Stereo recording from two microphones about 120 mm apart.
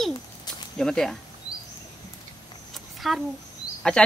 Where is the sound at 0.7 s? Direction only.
5° left (ahead or behind).